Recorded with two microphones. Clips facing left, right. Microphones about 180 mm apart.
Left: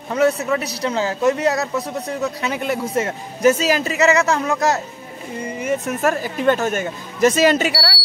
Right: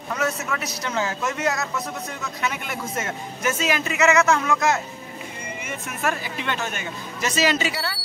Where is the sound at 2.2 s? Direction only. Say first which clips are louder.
Left 7 dB; 35° left (ahead or behind); by 7.9 s 50° left (ahead or behind).